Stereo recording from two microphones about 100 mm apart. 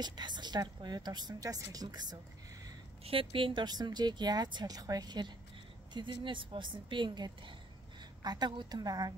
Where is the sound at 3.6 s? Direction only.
45° right (ahead or behind).